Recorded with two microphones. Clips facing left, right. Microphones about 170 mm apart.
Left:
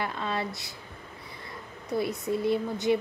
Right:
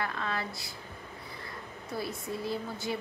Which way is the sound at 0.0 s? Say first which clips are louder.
Left 3 dB; 25° left (ahead or behind).